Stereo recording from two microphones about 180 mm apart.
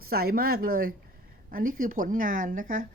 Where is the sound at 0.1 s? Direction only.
55° right (ahead or behind).